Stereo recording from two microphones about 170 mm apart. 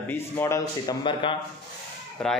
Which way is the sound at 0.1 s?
15° left (ahead or behind).